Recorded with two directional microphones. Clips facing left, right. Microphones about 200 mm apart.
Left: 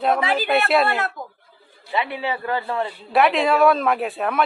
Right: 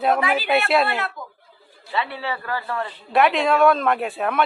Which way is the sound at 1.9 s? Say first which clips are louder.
Left 2 dB; 15° left (ahead or behind).